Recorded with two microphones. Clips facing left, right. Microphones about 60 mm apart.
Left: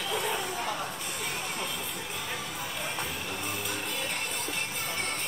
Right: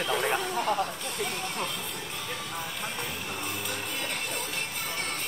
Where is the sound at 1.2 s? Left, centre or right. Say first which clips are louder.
Right 3 dB; centre.